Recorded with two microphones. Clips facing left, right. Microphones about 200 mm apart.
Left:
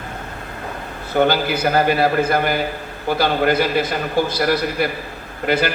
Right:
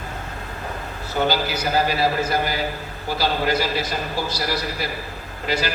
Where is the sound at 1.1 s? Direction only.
55° left (ahead or behind).